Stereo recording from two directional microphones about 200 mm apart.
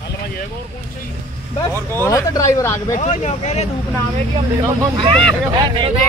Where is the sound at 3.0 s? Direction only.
35° left (ahead or behind).